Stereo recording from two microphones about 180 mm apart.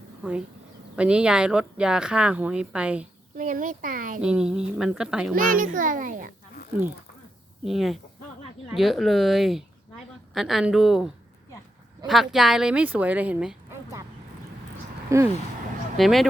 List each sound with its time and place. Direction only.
0.2 s a woman's voice: 5° right (ahead or behind)
3.3 s a child's voice: 45° right (ahead or behind)
4.2 s a woman's voice: 5° right (ahead or behind)
5.3 s a child's voice: 50° right (ahead or behind)
7.6 s a woman's voice: centre (ahead or behind)
15.1 s speech: 15° right (ahead or behind)
16.0 s a woman's voice: centre (ahead or behind)